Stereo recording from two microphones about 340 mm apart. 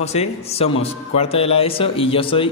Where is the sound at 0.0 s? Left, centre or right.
Centre.